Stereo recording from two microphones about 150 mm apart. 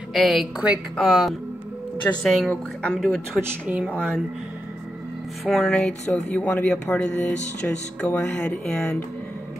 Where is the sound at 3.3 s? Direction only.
15° right (ahead or behind).